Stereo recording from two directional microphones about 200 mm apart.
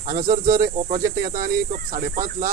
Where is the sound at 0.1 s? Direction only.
45° right (ahead or behind).